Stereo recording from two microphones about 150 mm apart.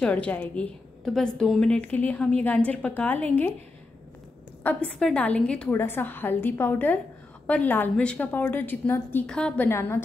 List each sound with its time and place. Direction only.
0.0 s a woman's voice: 10° left (ahead or behind)
4.6 s a woman's voice: 5° left (ahead or behind)
9.7 s a woman's voice: 15° left (ahead or behind)